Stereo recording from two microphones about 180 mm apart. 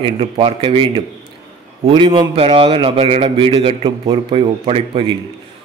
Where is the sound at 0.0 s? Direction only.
30° right (ahead or behind).